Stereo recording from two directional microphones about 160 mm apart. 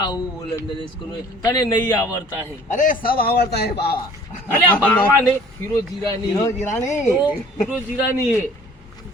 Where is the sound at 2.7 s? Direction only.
55° left (ahead or behind); by 3.9 s 85° left.